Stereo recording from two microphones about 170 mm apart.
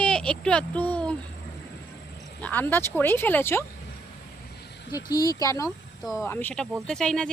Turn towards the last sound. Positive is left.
turn(degrees=5)  # may be behind; listen again after turning